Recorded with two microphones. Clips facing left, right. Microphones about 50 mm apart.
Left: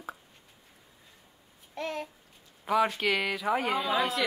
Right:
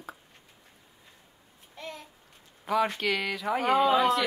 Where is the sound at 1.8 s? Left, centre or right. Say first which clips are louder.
Left 7 dB; left.